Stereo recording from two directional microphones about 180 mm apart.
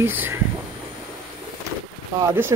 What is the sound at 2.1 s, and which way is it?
Speech, 15° right (ahead or behind).